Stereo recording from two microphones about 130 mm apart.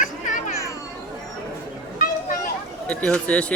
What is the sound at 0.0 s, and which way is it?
Children playing, 75° left (ahead or behind).